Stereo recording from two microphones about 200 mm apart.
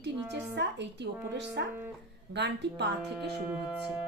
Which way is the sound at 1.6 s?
55° right (ahead or behind).